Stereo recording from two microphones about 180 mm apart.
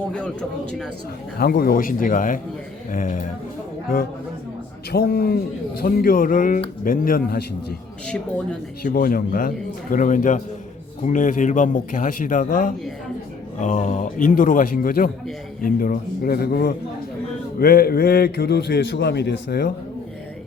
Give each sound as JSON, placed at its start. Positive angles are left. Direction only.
{"t": 1.4, "sound": "speech", "side_deg": 55}
{"t": 4.9, "sound": "speech", "side_deg": 60}
{"t": 8.8, "sound": "a man's voice", "side_deg": 60}